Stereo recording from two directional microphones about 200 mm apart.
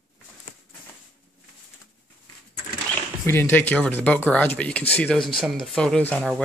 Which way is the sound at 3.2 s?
10° left (ahead or behind).